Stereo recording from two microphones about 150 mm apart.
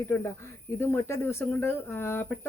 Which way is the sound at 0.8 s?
15° left (ahead or behind).